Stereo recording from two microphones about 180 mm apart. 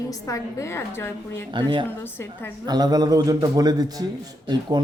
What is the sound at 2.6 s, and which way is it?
Speech, 20° right (ahead or behind).